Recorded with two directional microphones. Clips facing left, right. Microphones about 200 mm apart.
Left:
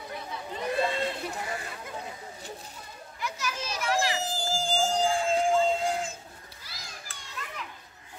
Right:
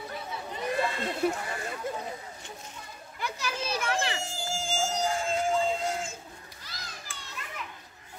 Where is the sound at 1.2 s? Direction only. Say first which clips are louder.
Right 9 dB; 55° right (ahead or behind).